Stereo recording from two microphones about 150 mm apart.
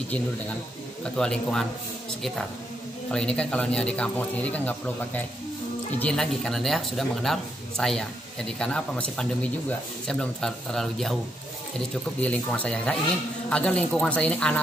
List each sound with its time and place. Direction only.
1.1 s speech: 5° left (ahead or behind)
3.1 s speech: 5° left (ahead or behind)
12.2 s speech: 10° left (ahead or behind)